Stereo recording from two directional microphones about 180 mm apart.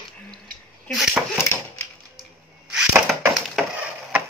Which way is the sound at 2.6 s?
5° right (ahead or behind).